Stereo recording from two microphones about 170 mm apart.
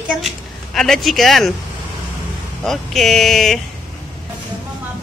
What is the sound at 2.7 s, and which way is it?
Speech, centre (ahead or behind).